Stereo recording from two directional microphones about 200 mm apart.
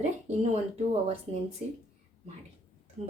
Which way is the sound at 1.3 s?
25° right (ahead or behind).